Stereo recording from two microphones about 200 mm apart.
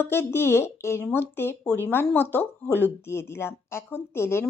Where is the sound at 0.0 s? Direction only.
10° left (ahead or behind).